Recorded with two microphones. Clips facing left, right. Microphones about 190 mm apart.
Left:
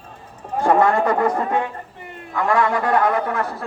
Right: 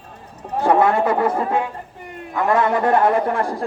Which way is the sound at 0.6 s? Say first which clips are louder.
Even; 5° right (ahead or behind).